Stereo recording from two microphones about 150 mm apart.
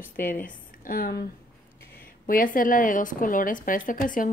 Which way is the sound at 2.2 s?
65° left (ahead or behind).